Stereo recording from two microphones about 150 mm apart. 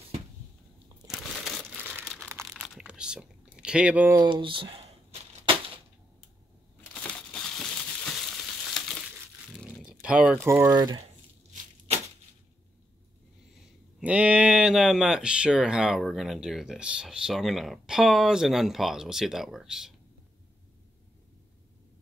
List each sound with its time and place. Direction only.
1.0 s crumpling: centre (ahead or behind)
1.8 s crumpling: 10° right (ahead or behind)
2.5 s a sound: 5° right (ahead or behind)
4.2 s speech: 35° right (ahead or behind)
7.5 s crumpling: 5° left (ahead or behind)
9.6 s a sound: 5° right (ahead or behind)
10.4 s speech: 20° right (ahead or behind)
13.9 s speech: 10° right (ahead or behind)